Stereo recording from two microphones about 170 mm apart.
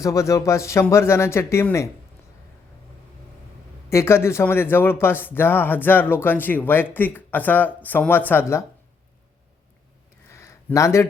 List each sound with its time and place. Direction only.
0.0 s speech: 20° left (ahead or behind)
3.8 s speech: 15° left (ahead or behind)
10.2 s a sound: 15° left (ahead or behind)